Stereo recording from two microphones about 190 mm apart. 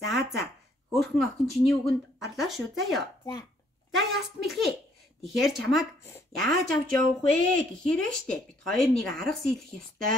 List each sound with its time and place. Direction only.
0.1 s speech: centre (ahead or behind)